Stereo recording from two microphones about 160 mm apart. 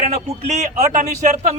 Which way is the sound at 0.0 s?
45° right (ahead or behind).